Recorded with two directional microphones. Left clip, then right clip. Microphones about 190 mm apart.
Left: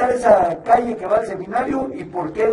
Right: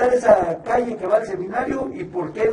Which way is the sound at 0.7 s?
20° left (ahead or behind).